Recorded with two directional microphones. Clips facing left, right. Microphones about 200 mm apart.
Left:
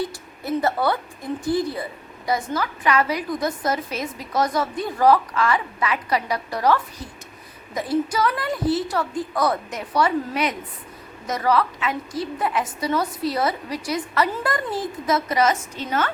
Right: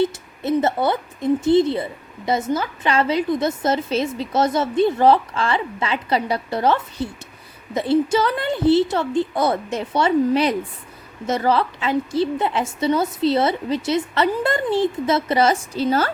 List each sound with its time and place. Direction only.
0.0 s speech: 25° right (ahead or behind)